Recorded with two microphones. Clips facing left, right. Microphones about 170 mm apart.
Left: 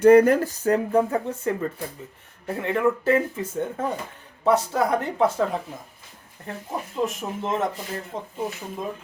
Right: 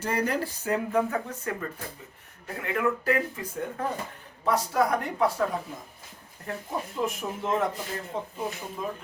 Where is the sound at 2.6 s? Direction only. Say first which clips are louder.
Left 5 dB; 30° left (ahead or behind).